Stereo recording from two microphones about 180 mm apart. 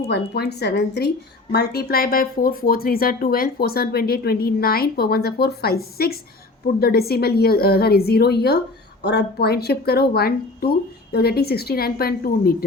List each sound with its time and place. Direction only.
0.1 s speech: 65° left (ahead or behind)